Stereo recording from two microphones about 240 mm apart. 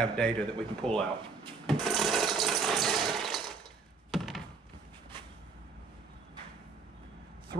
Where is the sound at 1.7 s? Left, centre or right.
Centre.